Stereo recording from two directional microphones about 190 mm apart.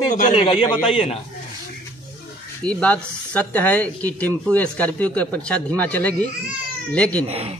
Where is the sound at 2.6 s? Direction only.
5° left (ahead or behind).